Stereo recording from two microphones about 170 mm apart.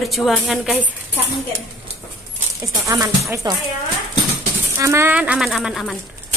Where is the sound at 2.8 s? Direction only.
20° right (ahead or behind).